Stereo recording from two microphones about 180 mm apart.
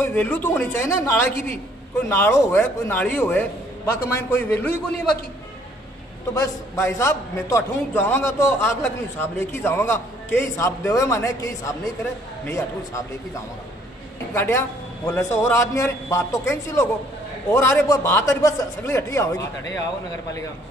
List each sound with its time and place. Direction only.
0.0 s a man's voice: 10° left (ahead or behind)
6.3 s a man's voice: 20° left (ahead or behind)
14.3 s a woman's voice: 15° left (ahead or behind)